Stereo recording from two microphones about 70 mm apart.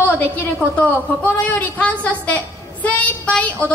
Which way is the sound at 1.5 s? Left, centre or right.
Left.